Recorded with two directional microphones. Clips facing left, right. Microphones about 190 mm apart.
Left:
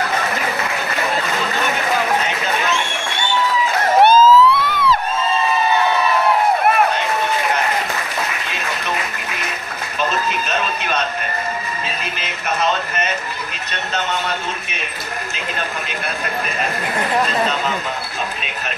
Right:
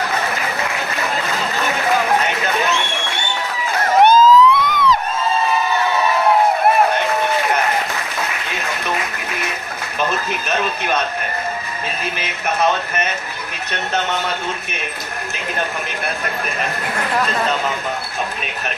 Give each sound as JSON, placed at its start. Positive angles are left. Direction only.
{"t": 4.0, "sound": "emergency vehicle", "side_deg": -15}